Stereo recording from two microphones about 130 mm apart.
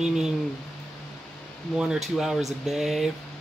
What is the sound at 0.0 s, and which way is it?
Speech, 5° right (ahead or behind).